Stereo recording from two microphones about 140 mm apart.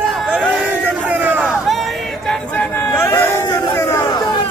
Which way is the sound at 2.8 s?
20° left (ahead or behind).